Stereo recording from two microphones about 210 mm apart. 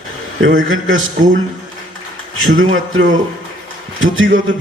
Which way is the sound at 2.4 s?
70° right (ahead or behind).